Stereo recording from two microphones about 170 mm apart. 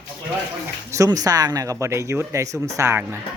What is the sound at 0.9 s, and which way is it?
Speech, 20° right (ahead or behind).